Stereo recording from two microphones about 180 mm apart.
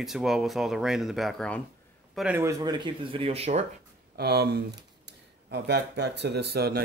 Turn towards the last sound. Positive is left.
turn(degrees=-60)  # may be behind; listen again after turning